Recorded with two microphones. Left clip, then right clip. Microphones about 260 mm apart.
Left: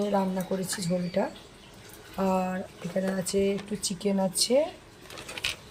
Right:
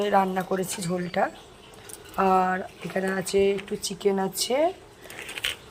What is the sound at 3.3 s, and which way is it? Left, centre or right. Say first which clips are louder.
Speech: right 6 dB; centre.